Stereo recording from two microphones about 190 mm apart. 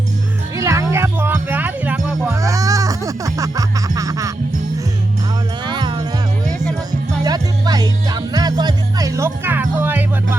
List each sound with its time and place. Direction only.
0.5 s music: 15° right (ahead or behind)
5.6 s music: 25° right (ahead or behind)